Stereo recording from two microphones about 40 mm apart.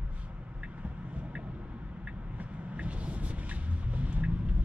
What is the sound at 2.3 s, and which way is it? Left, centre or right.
Vehicle, right.